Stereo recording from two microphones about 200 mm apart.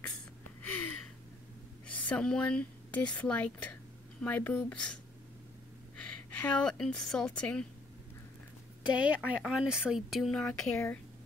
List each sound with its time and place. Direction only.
0.6 s a sound: 10° left (ahead or behind)
1.9 s speech: 5° left (ahead or behind)
5.9 s a woman's voice: 5° left (ahead or behind)
8.9 s speech: 5° right (ahead or behind)